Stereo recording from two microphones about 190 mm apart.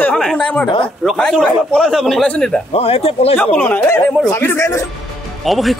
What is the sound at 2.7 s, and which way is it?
Speech, 30° left (ahead or behind).